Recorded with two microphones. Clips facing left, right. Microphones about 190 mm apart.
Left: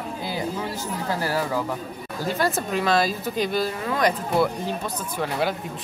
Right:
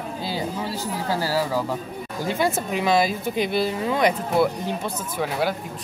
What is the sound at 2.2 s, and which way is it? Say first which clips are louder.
Speech: right 1 dB; 15° right (ahead or behind).